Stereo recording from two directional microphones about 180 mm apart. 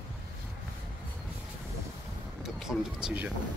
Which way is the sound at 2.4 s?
5° right (ahead or behind).